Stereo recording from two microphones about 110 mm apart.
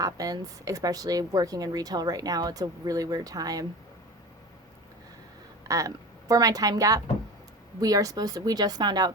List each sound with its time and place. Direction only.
0.0 s speech: 30° right (ahead or behind)
5.6 s a woman's voice: 30° right (ahead or behind)